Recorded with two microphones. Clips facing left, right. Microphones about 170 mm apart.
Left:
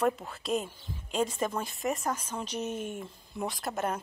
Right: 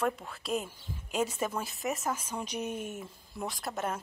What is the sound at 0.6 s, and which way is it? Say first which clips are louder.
A woman's voice: left 1 dB; 10° right (ahead or behind).